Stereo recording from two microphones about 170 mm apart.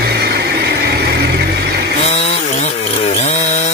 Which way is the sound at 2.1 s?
40° left (ahead or behind).